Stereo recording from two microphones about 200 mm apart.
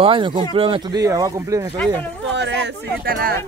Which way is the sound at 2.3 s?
60° right (ahead or behind).